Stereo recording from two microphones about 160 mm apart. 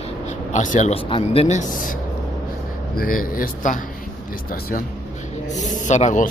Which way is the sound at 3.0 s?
60° left (ahead or behind).